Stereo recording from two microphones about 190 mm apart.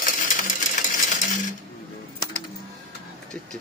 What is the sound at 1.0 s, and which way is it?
Coin, 40° left (ahead or behind).